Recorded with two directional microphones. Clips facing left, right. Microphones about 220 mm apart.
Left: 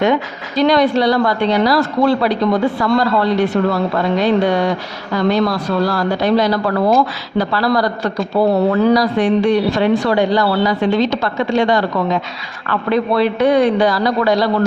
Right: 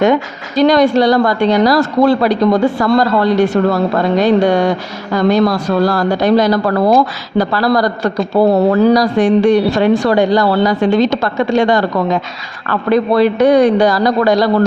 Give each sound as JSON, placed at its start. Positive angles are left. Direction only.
{"t": 0.0, "sound": "a woman's voice", "side_deg": -45}